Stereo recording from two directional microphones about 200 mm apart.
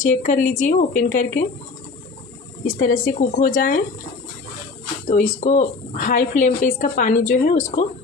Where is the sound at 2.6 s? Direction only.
45° left (ahead or behind).